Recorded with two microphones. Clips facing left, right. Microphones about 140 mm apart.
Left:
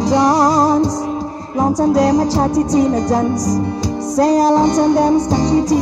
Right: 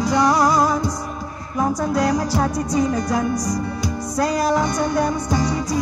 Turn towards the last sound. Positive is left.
turn(degrees=35)  # may be behind; listen again after turning